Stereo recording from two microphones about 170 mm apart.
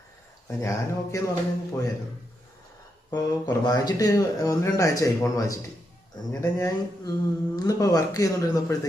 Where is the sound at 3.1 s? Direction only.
25° left (ahead or behind).